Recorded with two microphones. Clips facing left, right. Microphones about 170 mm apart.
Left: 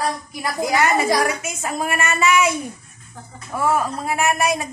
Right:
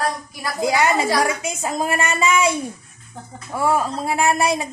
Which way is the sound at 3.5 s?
20° right (ahead or behind).